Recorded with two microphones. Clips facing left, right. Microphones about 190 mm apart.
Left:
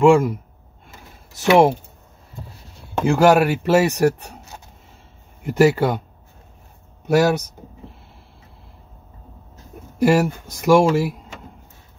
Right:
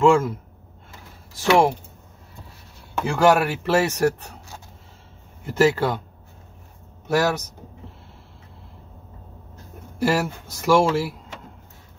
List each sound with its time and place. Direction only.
0.0 s speech: 15° left (ahead or behind)
2.9 s speech: 25° left (ahead or behind)
7.1 s speech: 15° left (ahead or behind)
10.0 s speech: 15° left (ahead or behind)